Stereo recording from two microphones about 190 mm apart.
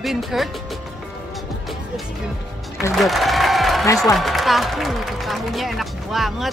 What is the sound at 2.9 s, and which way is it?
Applause, centre (ahead or behind).